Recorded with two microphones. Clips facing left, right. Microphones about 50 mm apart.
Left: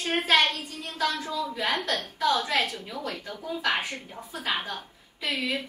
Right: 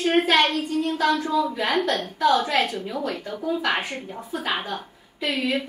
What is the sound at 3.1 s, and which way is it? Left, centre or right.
Speech, centre.